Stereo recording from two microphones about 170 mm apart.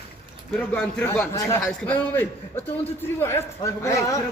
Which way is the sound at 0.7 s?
5° left (ahead or behind).